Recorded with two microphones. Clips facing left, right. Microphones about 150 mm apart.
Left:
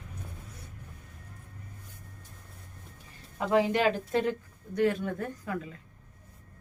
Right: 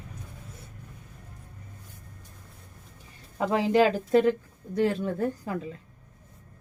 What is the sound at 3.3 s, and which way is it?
Speech, 30° right (ahead or behind).